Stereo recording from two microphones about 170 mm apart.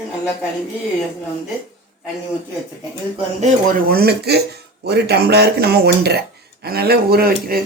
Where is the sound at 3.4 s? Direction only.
55° right (ahead or behind).